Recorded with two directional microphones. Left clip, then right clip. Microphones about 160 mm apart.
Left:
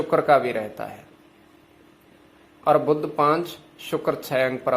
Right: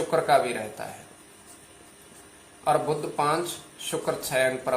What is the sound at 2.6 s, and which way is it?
Speech, 70° left (ahead or behind).